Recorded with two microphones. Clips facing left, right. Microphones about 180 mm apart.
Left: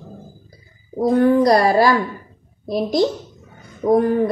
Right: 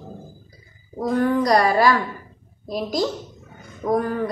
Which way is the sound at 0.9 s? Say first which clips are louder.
Left 6 dB; 25° left (ahead or behind).